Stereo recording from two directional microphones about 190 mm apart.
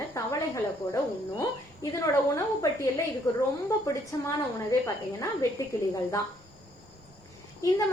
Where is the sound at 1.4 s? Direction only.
15° left (ahead or behind).